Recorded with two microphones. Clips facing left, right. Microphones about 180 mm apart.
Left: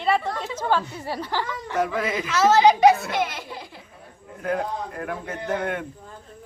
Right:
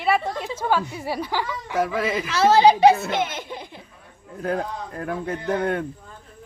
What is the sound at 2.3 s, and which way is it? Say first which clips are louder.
A child's voice: right 1 dB; 30° right (ahead or behind).